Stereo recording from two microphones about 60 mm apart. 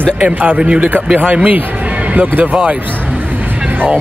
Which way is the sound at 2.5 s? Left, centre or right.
Right.